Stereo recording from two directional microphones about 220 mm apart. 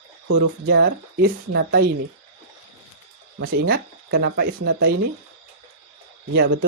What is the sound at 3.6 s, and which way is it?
Speech, 45° right (ahead or behind).